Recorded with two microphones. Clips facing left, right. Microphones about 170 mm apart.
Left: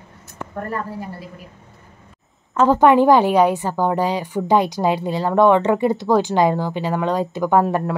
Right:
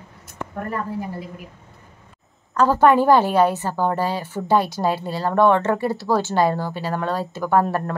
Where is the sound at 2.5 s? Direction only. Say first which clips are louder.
Left 2 dB; 20° left (ahead or behind).